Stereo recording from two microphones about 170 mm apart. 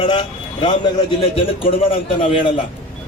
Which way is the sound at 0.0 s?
30° left (ahead or behind).